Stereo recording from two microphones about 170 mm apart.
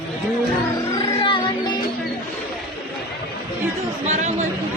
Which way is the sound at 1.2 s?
30° left (ahead or behind).